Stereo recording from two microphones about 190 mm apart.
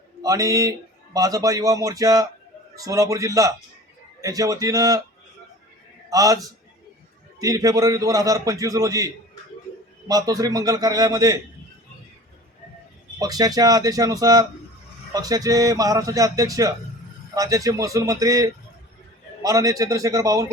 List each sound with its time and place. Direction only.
0.2 s a man's voice: 20° right (ahead or behind)
6.1 s a man's voice: 20° right (ahead or behind)
13.1 s a man's voice: 20° right (ahead or behind)